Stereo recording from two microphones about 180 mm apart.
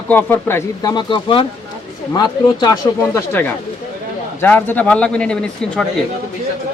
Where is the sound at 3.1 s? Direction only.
10° left (ahead or behind).